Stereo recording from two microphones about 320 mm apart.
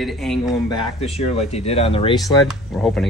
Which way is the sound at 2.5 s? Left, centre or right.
Centre.